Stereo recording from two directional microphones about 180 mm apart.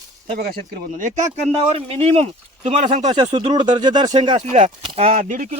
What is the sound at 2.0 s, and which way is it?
Speech, 35° right (ahead or behind).